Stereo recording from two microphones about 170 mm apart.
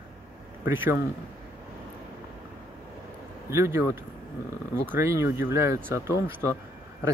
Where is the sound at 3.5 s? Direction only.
15° right (ahead or behind).